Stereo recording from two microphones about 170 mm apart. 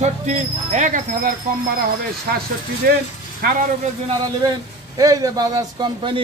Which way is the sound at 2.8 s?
65° right (ahead or behind).